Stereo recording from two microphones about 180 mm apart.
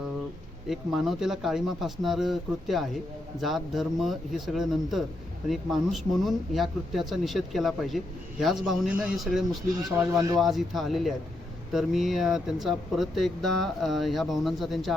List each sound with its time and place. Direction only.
0.7 s speech: centre (ahead or behind)
10.0 s speech: 15° right (ahead or behind)
10.4 s speech: centre (ahead or behind)